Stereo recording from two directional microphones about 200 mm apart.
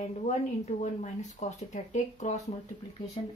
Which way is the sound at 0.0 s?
35° left (ahead or behind).